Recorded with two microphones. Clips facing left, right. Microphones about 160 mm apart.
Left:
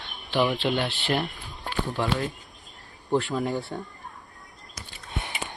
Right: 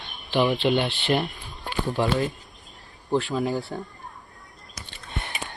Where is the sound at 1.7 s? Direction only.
5° right (ahead or behind).